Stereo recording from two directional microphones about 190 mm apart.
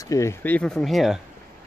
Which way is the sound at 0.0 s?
15° left (ahead or behind).